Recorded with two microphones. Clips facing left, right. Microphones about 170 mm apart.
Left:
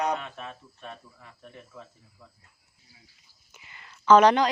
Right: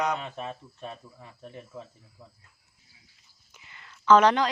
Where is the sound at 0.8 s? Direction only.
20° right (ahead or behind).